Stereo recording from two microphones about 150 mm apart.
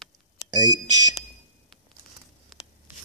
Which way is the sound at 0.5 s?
25° right (ahead or behind).